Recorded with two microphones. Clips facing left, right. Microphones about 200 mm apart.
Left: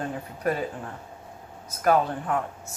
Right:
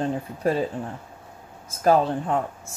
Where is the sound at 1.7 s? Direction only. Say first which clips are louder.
Right 3 dB; 25° right (ahead or behind).